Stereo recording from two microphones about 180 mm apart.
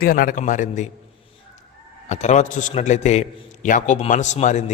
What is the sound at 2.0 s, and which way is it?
A man's voice, 40° left (ahead or behind).